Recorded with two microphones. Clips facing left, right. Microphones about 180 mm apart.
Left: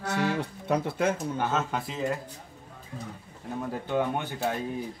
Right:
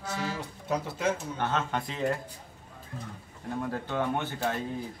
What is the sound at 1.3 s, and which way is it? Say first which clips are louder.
Speech: left 2 dB; 5° left (ahead or behind).